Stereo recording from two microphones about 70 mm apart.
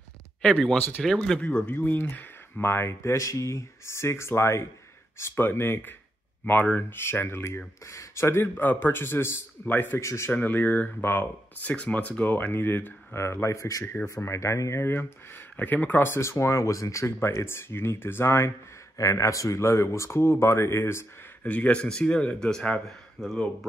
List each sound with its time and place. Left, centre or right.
0.4 s speech: centre
1.6 s speech: left
9.9 s speech: left
10.3 s speech: left
15.5 s speech: left
18.9 s speech: left
21.5 s speech: centre